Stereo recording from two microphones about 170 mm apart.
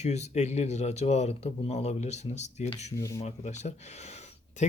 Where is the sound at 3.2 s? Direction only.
45° left (ahead or behind).